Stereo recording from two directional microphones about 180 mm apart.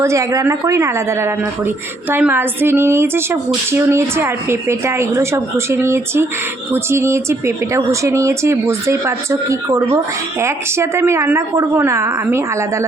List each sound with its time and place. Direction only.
0.0 s speech: 15° right (ahead or behind)